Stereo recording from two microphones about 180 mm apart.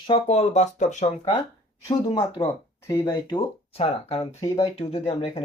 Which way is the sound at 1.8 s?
25° left (ahead or behind).